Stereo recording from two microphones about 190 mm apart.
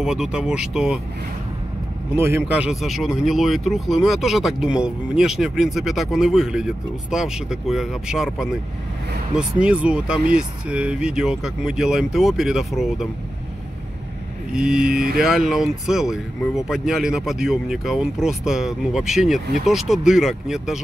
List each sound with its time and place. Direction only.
0.0 s speech: 5° right (ahead or behind)
2.1 s speech: 15° right (ahead or behind)
14.5 s speech: 5° right (ahead or behind)